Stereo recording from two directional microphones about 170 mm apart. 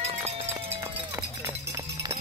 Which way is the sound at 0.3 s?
35° right (ahead or behind).